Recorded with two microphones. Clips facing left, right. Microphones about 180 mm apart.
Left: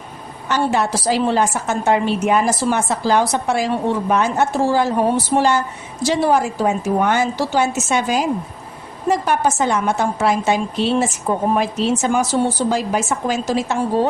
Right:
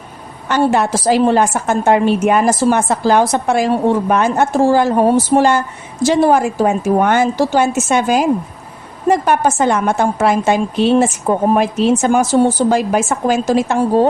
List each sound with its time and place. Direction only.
0.4 s a woman's voice: 55° right (ahead or behind)